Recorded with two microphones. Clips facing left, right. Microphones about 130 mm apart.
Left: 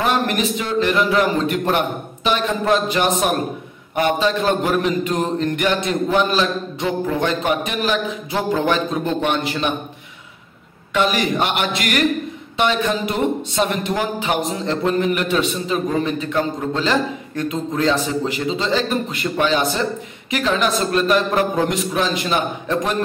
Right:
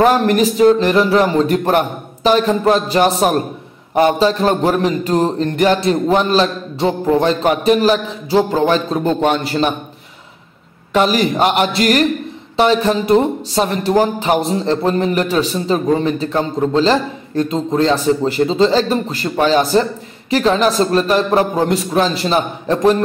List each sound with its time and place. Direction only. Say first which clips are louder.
0.0 s speech: right 7 dB; 40° right (ahead or behind)
10.9 s speech: right 4 dB; 35° right (ahead or behind)